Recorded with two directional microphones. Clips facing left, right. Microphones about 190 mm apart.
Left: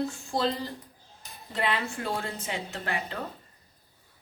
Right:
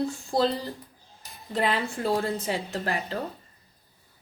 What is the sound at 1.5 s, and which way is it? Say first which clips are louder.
Speech: right 3 dB; 40° right (ahead or behind).